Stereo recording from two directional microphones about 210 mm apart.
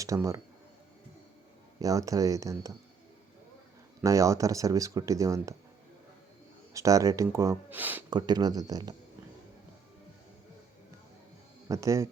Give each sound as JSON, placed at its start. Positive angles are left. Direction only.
{"t": 0.0, "sound": "speech", "side_deg": -15}
{"t": 1.8, "sound": "speech", "side_deg": -15}
{"t": 4.0, "sound": "speech", "side_deg": -15}
{"t": 6.7, "sound": "speech", "side_deg": -15}
{"t": 11.7, "sound": "speech", "side_deg": -15}